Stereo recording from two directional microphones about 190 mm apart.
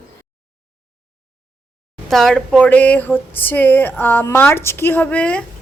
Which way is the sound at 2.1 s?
Centre (ahead or behind).